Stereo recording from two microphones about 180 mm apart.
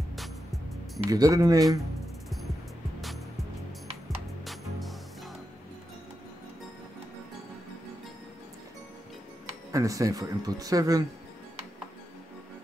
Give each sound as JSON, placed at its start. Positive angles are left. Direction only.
{"t": 0.1, "sound": "music", "side_deg": 0}
{"t": 1.0, "sound": "speech", "side_deg": -20}
{"t": 3.0, "sound": "music", "side_deg": 0}
{"t": 4.5, "sound": "music", "side_deg": 0}
{"t": 9.7, "sound": "speech", "side_deg": -20}